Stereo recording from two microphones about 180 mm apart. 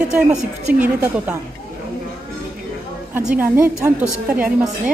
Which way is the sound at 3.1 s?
10° right (ahead or behind).